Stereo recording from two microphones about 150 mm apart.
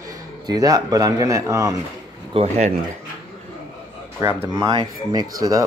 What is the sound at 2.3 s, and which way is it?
Speech, 50° right (ahead or behind).